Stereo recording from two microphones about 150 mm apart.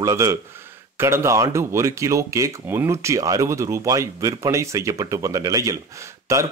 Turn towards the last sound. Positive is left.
turn(degrees=-20)  # may be behind; listen again after turning